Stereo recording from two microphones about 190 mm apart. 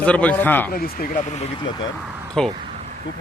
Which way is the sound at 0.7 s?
50° left (ahead or behind).